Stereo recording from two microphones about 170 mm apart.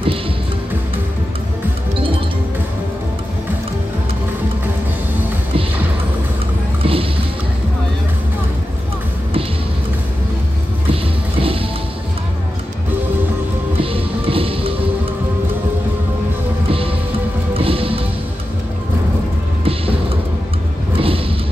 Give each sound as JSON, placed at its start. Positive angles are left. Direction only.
{"t": 6.8, "sound": "music", "side_deg": -35}
{"t": 10.9, "sound": "music", "side_deg": -35}
{"t": 13.7, "sound": "music", "side_deg": -35}
{"t": 17.6, "sound": "music", "side_deg": -35}
{"t": 19.6, "sound": "music", "side_deg": -35}
{"t": 20.9, "sound": "a sound", "side_deg": -35}